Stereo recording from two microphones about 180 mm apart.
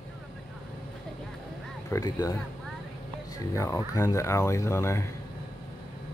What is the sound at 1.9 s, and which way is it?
Speech, 20° left (ahead or behind).